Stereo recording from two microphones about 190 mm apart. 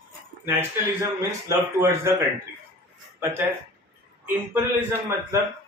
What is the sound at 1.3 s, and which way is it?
Speech, 15° right (ahead or behind).